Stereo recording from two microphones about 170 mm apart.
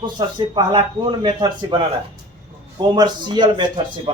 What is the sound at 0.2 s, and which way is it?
Speech, 25° right (ahead or behind).